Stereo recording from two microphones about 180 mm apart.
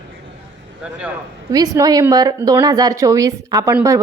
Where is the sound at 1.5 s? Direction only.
20° right (ahead or behind).